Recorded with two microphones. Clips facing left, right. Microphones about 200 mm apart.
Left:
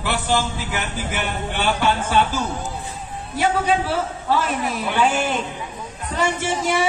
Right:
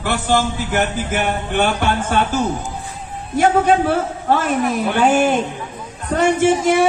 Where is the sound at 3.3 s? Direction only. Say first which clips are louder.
Right 6 dB; 50° right (ahead or behind).